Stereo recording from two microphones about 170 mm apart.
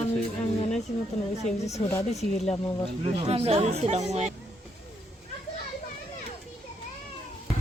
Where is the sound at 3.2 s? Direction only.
35° right (ahead or behind).